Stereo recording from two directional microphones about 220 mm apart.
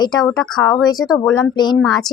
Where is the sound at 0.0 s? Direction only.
20° left (ahead or behind).